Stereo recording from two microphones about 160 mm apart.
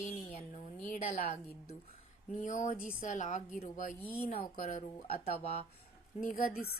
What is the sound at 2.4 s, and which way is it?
Speech, 50° left (ahead or behind).